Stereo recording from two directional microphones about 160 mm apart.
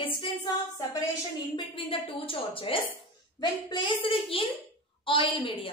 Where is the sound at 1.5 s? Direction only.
35° left (ahead or behind).